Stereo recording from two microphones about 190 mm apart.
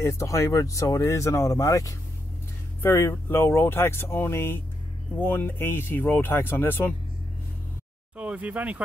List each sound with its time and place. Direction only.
0.0 s speech: 15° left (ahead or behind)
8.2 s speech: 5° right (ahead or behind)